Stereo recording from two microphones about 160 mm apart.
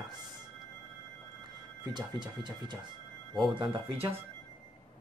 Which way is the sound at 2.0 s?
25° right (ahead or behind).